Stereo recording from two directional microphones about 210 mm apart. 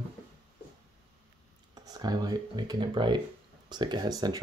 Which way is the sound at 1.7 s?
15° right (ahead or behind).